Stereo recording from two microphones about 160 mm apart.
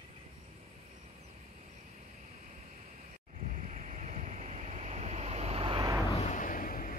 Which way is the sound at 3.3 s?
45° right (ahead or behind).